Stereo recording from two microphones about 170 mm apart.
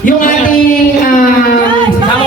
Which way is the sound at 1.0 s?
55° left (ahead or behind).